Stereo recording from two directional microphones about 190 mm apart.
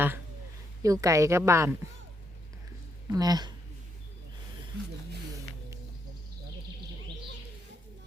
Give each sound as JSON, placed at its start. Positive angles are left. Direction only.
{"t": 0.8, "sound": "a woman's voice", "side_deg": -15}
{"t": 3.1, "sound": "speech", "side_deg": -20}